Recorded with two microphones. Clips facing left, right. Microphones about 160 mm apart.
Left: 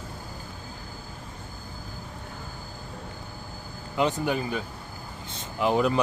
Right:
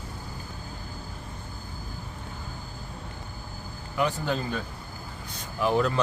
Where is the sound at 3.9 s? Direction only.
20° left (ahead or behind).